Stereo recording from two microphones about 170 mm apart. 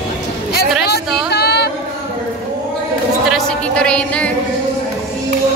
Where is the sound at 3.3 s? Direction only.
5° left (ahead or behind).